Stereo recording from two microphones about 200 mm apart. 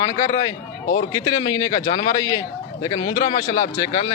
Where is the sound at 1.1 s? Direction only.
20° left (ahead or behind).